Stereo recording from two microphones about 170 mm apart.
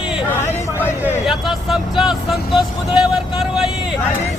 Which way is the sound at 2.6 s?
5° right (ahead or behind).